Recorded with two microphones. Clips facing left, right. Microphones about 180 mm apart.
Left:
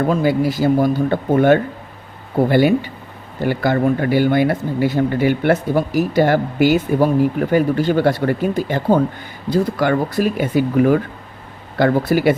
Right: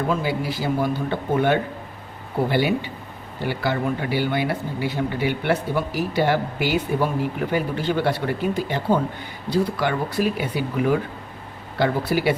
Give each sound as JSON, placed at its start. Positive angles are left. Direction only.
{"t": 0.1, "sound": "speech", "side_deg": 45}